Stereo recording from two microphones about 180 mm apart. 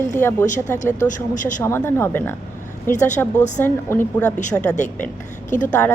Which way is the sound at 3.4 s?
40° left (ahead or behind).